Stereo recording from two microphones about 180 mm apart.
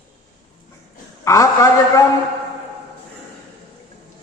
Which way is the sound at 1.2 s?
20° left (ahead or behind).